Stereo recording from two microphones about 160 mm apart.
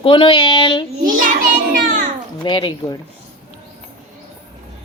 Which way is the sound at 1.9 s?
50° right (ahead or behind).